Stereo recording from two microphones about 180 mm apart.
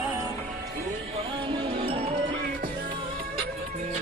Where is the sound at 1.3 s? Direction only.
25° right (ahead or behind).